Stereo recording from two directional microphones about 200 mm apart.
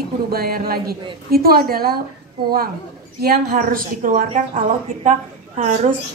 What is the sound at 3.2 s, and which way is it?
A woman's voice, 50° right (ahead or behind).